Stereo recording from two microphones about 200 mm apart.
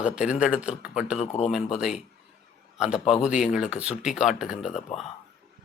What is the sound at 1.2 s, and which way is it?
Speech, 35° left (ahead or behind).